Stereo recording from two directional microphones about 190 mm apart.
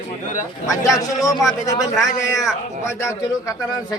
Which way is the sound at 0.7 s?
15° left (ahead or behind).